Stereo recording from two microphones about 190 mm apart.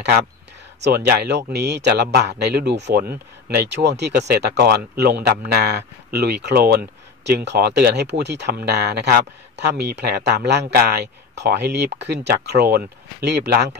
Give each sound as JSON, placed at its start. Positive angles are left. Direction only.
{"t": 0.8, "sound": "speech", "side_deg": -60}